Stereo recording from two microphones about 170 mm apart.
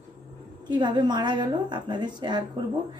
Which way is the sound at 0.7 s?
25° right (ahead or behind).